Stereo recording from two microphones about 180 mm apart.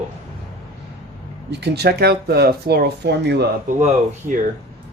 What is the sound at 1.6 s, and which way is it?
Speech, 65° right (ahead or behind).